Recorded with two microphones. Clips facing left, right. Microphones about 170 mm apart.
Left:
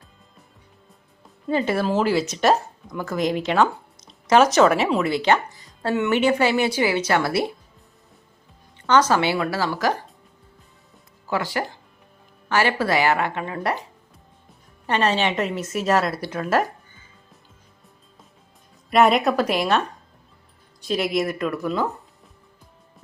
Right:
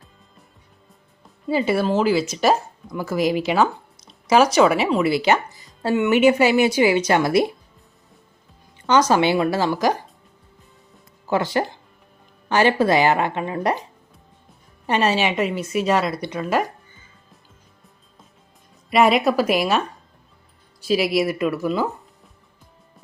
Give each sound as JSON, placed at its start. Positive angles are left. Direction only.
{"t": 1.5, "sound": "a woman's voice", "side_deg": -5}
{"t": 8.9, "sound": "a woman's voice", "side_deg": -15}
{"t": 11.3, "sound": "a woman's voice", "side_deg": -25}
{"t": 14.8, "sound": "speech", "side_deg": -10}
{"t": 18.9, "sound": "speech", "side_deg": 0}
{"t": 20.8, "sound": "speech", "side_deg": -5}